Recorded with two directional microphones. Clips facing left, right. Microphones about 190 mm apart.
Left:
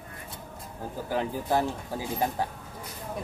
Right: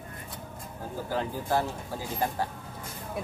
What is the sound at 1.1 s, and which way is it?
Speech, 15° left (ahead or behind).